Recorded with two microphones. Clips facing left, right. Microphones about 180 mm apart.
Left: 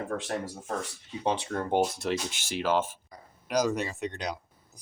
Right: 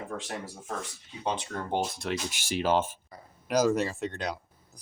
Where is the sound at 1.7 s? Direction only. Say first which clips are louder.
Left 4 dB; 5° left (ahead or behind).